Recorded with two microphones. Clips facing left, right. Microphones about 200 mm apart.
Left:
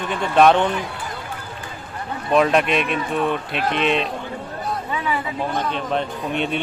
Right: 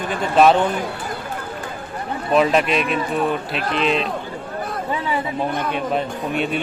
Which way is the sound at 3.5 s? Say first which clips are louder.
Even; 40° right (ahead or behind).